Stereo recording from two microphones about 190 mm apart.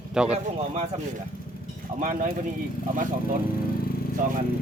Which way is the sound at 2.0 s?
40° right (ahead or behind).